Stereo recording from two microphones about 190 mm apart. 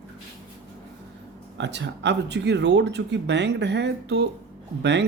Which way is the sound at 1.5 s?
70° right (ahead or behind).